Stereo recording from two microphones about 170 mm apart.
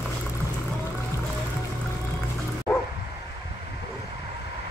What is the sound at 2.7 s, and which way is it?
Bow-wow, 10° left (ahead or behind).